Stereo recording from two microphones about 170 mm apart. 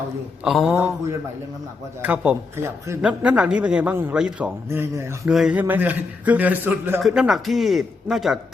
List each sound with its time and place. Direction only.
0.4 s a man's voice: centre (ahead or behind)
0.7 s a man's voice: 15° right (ahead or behind)
2.0 s a man's voice: 10° right (ahead or behind)
5.3 s a man's voice: 5° right (ahead or behind)